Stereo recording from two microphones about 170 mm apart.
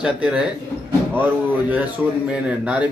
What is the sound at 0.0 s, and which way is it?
A man's voice, 5° right (ahead or behind).